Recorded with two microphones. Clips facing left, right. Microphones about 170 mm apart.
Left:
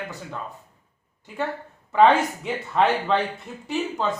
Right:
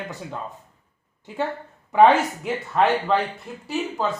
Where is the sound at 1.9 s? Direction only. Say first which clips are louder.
Right 2 dB; 20° right (ahead or behind).